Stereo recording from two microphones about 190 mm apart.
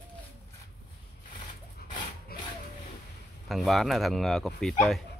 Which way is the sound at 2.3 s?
55° left (ahead or behind).